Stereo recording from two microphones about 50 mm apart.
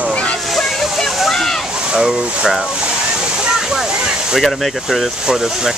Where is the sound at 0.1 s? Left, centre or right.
Left.